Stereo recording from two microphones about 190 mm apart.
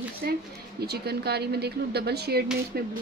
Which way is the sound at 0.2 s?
60° right (ahead or behind).